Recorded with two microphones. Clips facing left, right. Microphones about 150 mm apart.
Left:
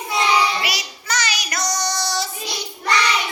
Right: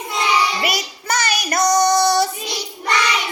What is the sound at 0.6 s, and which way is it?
Child singing, 50° right (ahead or behind).